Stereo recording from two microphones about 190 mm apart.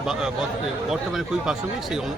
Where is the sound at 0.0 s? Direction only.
5° right (ahead or behind).